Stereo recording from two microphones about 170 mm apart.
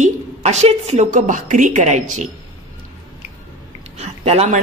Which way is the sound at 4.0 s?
40° right (ahead or behind).